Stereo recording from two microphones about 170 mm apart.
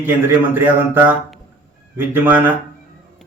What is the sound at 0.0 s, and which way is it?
Speech, 10° right (ahead or behind).